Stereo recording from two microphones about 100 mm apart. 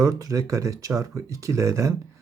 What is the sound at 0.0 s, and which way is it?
Speech, 35° right (ahead or behind).